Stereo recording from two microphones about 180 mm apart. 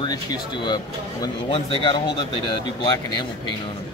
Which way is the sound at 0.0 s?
25° left (ahead or behind).